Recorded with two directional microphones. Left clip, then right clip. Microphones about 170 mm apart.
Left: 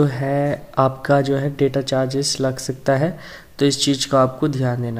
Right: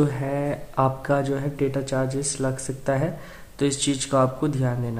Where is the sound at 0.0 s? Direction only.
25° left (ahead or behind).